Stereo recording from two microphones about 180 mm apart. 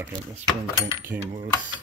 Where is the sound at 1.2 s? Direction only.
45° right (ahead or behind).